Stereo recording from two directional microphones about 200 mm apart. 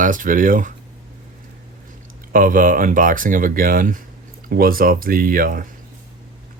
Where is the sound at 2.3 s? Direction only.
40° right (ahead or behind).